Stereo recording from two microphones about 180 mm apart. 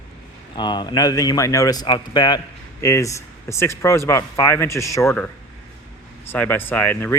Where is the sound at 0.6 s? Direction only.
25° left (ahead or behind).